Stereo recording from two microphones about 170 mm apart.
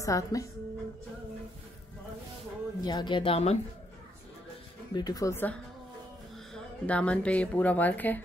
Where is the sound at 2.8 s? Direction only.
25° left (ahead or behind).